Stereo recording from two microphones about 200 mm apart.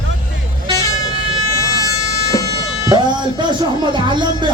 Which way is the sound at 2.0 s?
15° left (ahead or behind).